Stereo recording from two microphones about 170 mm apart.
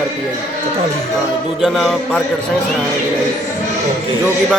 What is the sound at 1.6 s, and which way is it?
Speech, centre (ahead or behind).